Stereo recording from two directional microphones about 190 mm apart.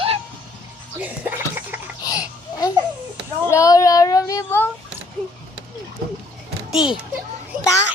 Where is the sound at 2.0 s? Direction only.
20° left (ahead or behind).